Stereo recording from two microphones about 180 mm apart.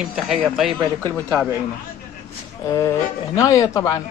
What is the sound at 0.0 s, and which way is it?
Speech, 5° right (ahead or behind).